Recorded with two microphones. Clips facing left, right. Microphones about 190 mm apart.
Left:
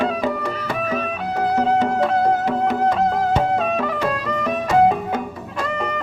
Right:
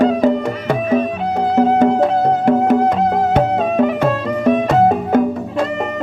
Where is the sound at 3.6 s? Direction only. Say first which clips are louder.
Right 6 dB; 25° right (ahead or behind).